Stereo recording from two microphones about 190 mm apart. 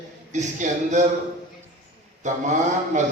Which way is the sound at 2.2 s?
40° right (ahead or behind).